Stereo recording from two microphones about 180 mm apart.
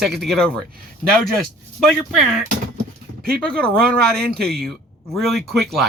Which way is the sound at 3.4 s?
5° left (ahead or behind).